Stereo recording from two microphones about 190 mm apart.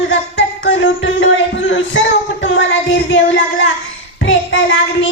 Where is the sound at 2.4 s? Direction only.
75° left (ahead or behind).